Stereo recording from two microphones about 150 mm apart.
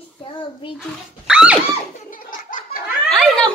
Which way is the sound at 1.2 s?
5° right (ahead or behind).